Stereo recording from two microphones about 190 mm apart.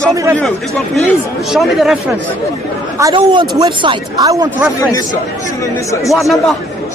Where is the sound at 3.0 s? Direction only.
20° right (ahead or behind).